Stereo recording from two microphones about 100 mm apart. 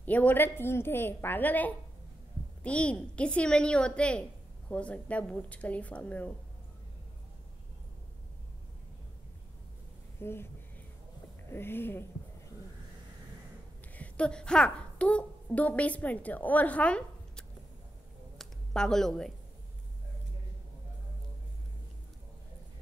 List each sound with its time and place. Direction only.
0.0 s a woman's voice: 15° left (ahead or behind)
10.1 s speech: 25° left (ahead or behind)
11.5 s a woman's voice: 20° left (ahead or behind)
13.9 s a woman's voice: 15° left (ahead or behind)
18.4 s a sound: 5° left (ahead or behind)